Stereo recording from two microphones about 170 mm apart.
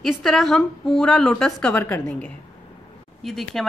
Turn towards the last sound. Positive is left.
turn(degrees=0)  # may be behind; listen again after turning